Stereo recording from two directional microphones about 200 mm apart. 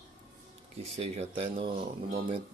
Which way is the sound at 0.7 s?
35° right (ahead or behind).